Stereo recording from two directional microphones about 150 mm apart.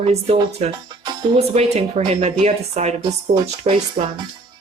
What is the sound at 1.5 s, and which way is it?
Speech, 45° right (ahead or behind).